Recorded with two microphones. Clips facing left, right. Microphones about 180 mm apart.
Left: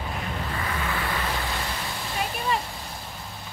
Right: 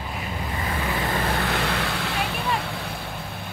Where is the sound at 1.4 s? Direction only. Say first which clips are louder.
Right 6 dB; 70° right (ahead or behind).